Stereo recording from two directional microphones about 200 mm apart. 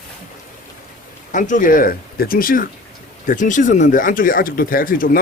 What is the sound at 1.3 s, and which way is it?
Speech, 40° left (ahead or behind).